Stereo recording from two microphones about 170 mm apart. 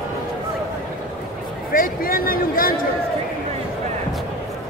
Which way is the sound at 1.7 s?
55° left (ahead or behind).